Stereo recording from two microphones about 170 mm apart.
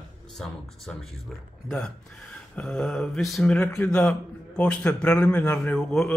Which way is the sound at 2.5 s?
5° left (ahead or behind).